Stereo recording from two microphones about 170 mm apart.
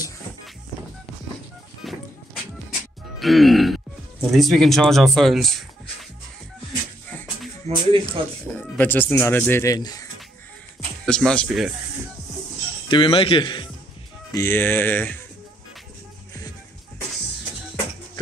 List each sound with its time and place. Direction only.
1.8 s music: centre (ahead or behind)
3.2 s speech: centre (ahead or behind)
7.6 s speech: 30° right (ahead or behind)
8.5 s speech: 10° left (ahead or behind)
11.1 s speech: 5° left (ahead or behind)
12.8 s speech: 30° left (ahead or behind)
14.3 s speech: 15° left (ahead or behind)